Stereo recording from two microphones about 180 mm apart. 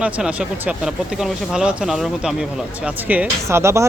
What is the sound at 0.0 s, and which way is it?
Speech, 5° right (ahead or behind).